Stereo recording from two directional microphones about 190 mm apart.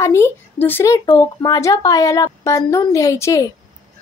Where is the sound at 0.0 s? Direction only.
15° left (ahead or behind).